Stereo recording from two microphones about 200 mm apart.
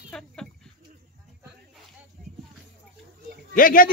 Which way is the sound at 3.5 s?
45° left (ahead or behind).